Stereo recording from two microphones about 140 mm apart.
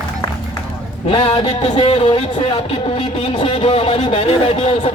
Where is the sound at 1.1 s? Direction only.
55° left (ahead or behind).